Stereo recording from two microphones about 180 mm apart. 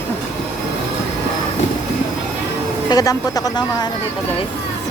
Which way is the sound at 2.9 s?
20° left (ahead or behind).